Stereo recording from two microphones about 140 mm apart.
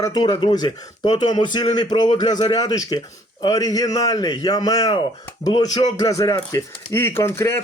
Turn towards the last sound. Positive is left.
turn(degrees=20)  # may be behind; listen again after turning